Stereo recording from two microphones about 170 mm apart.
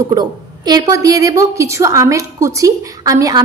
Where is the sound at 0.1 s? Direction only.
25° right (ahead or behind).